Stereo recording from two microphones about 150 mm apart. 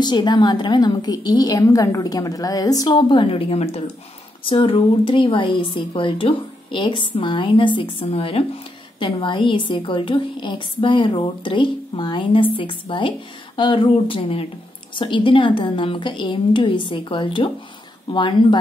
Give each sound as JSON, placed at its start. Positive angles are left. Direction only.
{"t": 0.0, "sound": "a woman's voice", "side_deg": 30}